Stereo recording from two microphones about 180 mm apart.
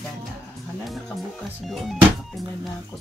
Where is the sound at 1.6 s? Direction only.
Centre (ahead or behind).